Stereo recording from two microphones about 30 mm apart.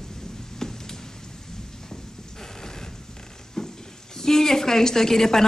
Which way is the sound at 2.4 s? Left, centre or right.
Centre.